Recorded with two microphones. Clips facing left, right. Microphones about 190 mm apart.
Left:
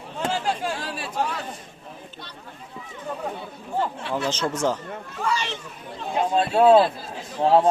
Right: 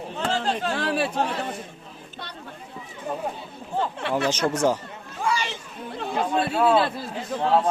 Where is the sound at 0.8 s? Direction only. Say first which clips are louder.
Right 8 dB; 65° right (ahead or behind).